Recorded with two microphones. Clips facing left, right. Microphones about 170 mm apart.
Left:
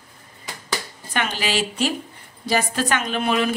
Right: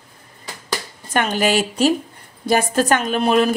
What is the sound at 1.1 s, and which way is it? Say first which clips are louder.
A woman's voice: right 6 dB; 50° right (ahead or behind).